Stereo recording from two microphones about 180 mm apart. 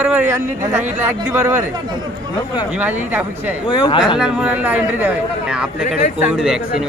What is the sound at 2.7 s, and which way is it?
Speech, 10° right (ahead or behind).